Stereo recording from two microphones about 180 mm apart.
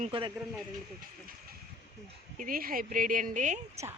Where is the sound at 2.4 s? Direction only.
50° right (ahead or behind).